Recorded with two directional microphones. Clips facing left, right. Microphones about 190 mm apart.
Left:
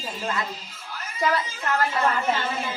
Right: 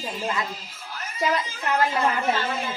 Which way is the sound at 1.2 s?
15° right (ahead or behind).